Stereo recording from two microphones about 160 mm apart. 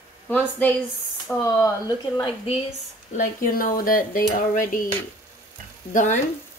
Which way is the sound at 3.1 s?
60° left (ahead or behind).